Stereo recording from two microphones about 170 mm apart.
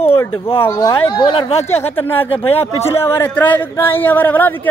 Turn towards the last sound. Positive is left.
turn(degrees=10)  # may be behind; listen again after turning